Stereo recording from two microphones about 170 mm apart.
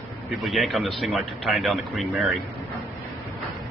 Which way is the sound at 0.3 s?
Centre (ahead or behind).